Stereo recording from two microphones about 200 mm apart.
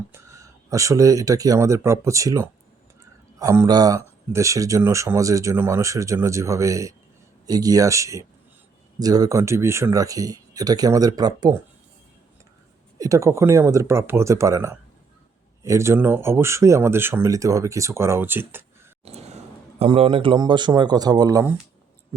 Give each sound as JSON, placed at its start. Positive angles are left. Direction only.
{"t": 0.1, "sound": "speech", "side_deg": -15}
{"t": 13.0, "sound": "speech", "side_deg": -15}
{"t": 19.0, "sound": "a sound", "side_deg": -30}
{"t": 19.8, "sound": "speech", "side_deg": -30}